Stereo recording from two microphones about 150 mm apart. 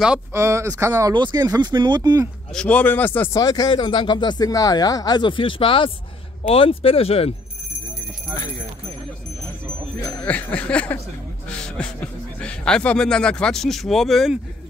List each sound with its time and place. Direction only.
0.3 s speech: 20° right (ahead or behind)
1.1 s speech: 30° right (ahead or behind)
2.5 s speech: 10° left (ahead or behind)
3.3 s speech: 25° left (ahead or behind); by 7.3 s 40° left (ahead or behind)
10.2 s speech: 10° left (ahead or behind)